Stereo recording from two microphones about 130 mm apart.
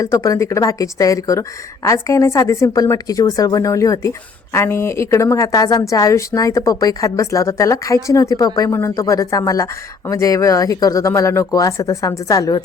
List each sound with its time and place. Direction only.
0.0 s speech: 25° left (ahead or behind)